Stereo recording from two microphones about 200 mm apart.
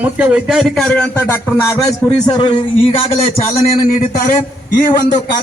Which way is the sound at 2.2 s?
20° left (ahead or behind).